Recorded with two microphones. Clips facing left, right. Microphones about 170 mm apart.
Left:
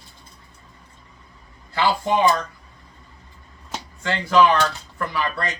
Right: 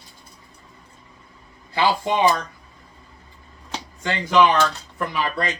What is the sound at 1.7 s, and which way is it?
Speech, 15° right (ahead or behind).